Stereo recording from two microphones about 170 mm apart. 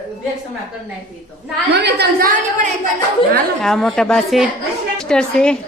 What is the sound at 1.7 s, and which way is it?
Speech, 80° right.